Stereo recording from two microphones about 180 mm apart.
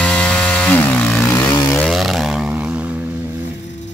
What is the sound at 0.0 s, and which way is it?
Chainsaw, 5° left (ahead or behind).